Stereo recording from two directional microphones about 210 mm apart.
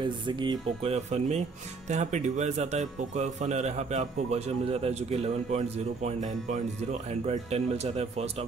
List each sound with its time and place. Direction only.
0.0 s speech: 20° right (ahead or behind)